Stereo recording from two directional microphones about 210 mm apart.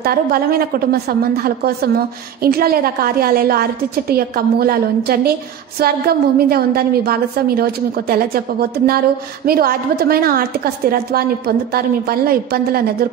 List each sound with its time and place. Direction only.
0.0 s a woman's voice: 45° right (ahead or behind)